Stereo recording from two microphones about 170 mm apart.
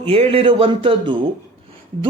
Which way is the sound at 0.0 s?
35° right (ahead or behind).